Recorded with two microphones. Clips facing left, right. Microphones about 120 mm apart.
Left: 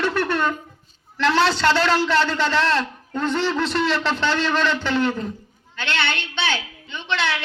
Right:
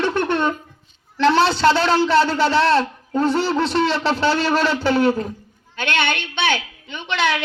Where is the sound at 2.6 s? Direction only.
35° right (ahead or behind).